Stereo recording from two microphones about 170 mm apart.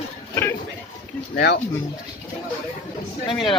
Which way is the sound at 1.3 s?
70° left (ahead or behind).